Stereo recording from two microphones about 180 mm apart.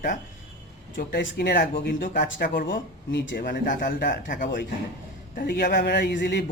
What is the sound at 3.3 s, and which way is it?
Speech, 50° left (ahead or behind).